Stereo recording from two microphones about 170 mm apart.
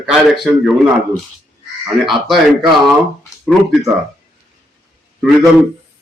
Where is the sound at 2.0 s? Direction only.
Centre (ahead or behind).